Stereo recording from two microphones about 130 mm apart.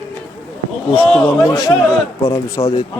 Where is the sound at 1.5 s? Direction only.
25° left (ahead or behind).